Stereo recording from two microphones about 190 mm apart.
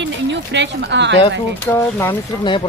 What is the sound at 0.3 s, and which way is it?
Speech, 65° right (ahead or behind).